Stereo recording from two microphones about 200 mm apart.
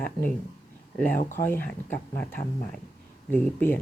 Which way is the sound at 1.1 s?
40° left (ahead or behind).